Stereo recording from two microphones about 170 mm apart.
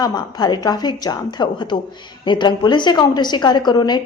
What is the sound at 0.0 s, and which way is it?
A woman's voice, 25° left (ahead or behind).